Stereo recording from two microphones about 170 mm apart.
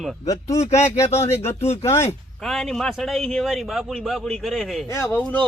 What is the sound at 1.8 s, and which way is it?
Speech, 15° left (ahead or behind).